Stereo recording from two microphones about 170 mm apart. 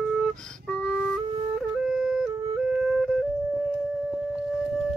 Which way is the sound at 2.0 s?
5° right (ahead or behind).